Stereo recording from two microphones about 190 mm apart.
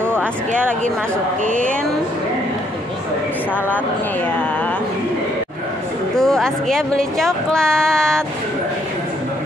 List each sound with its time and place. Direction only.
1.4 s speech: 45° right (ahead or behind)
6.1 s speech: centre (ahead or behind)